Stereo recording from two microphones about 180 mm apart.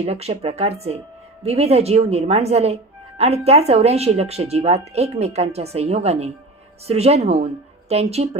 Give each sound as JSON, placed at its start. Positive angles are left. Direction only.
{"t": 0.0, "sound": "speech", "side_deg": -35}